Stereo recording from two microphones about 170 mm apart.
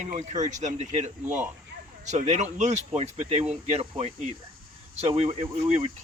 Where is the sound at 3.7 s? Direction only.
30° right (ahead or behind).